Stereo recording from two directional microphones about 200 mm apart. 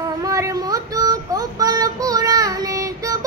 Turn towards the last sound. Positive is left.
turn(degrees=-15)  # may be behind; listen again after turning